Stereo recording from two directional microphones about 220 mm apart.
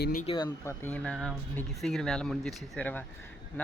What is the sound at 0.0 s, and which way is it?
Speech, 40° left (ahead or behind).